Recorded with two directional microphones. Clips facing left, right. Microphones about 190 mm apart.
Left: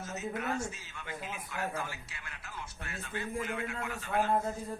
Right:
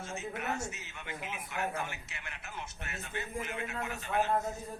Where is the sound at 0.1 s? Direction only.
25° right (ahead or behind).